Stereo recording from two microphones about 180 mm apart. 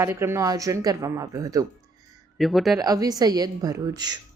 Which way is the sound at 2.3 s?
Centre (ahead or behind).